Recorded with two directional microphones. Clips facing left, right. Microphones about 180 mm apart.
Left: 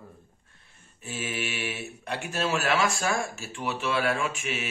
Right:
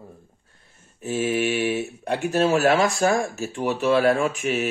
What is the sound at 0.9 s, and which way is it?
Mantra, 45° right (ahead or behind).